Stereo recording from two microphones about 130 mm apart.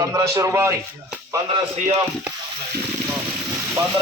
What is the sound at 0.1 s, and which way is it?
Speech, 20° right (ahead or behind).